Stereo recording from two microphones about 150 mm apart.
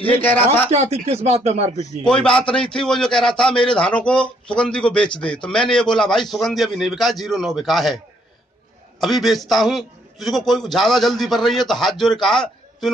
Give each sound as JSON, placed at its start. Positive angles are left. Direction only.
{"t": 0.1, "sound": "speech", "side_deg": 10}
{"t": 0.7, "sound": "speech", "side_deg": -45}
{"t": 2.0, "sound": "a man's voice", "side_deg": 5}
{"t": 9.0, "sound": "a man's voice", "side_deg": 0}